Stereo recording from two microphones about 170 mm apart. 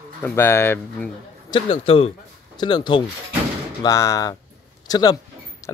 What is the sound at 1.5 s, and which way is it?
A man's voice, 30° left (ahead or behind).